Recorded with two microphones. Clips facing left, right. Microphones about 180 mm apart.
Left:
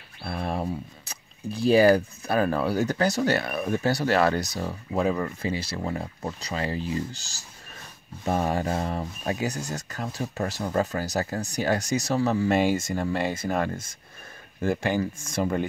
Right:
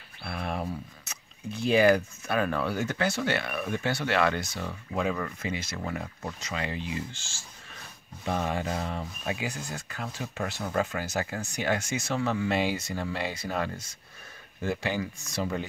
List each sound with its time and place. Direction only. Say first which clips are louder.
0.2 s speech: left 4 dB; 30° left (ahead or behind); by 15.6 s 50° left (ahead or behind)